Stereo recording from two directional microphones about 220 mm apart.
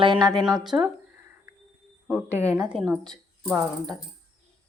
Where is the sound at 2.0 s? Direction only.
10° right (ahead or behind).